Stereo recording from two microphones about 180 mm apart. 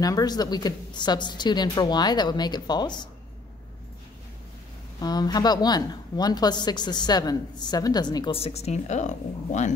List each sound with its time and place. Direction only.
0.0 s a woman's voice: 20° left (ahead or behind)
5.0 s a woman's voice: 20° left (ahead or behind); by 9.8 s 40° left (ahead or behind)